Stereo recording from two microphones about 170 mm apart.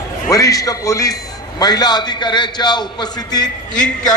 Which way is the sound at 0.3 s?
20° left (ahead or behind).